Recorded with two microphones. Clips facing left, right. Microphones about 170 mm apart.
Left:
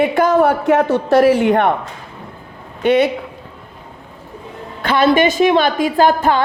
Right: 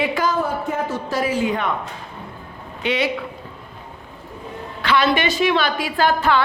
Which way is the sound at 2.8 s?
55° left (ahead or behind).